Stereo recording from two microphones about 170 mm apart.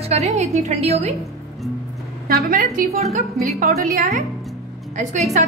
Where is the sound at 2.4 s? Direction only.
50° right (ahead or behind).